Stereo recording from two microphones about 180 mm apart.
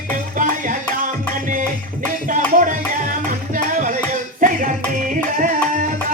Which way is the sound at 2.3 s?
45° right (ahead or behind).